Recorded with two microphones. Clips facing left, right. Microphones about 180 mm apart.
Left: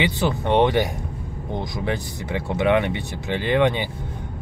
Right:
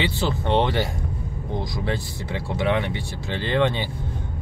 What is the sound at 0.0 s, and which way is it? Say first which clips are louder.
Speech: left 2 dB; 15° left (ahead or behind).